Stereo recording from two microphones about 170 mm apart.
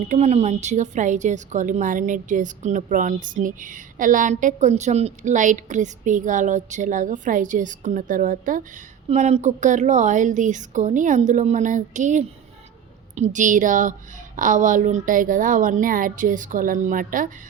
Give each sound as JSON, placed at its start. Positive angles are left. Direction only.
{"t": 0.1, "sound": "a woman's voice", "side_deg": -40}